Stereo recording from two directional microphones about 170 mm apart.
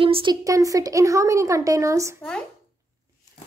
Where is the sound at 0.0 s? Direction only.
30° right (ahead or behind).